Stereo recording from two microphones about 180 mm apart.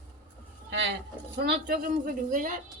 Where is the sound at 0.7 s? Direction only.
70° right (ahead or behind).